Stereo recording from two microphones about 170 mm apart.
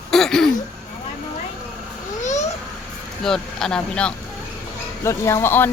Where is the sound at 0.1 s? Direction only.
Centre (ahead or behind).